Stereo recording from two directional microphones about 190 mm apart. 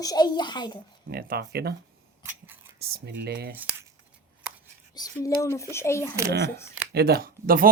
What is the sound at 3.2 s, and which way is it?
Speech, 55° right (ahead or behind).